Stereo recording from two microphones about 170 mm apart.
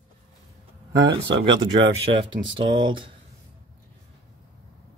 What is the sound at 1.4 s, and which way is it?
Speech, 30° right (ahead or behind).